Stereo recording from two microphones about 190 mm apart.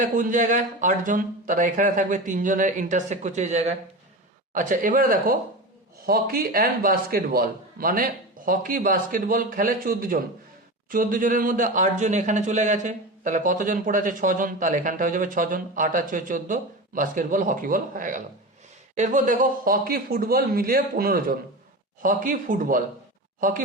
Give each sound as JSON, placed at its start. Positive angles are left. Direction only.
{"t": 0.0, "sound": "speech", "side_deg": -45}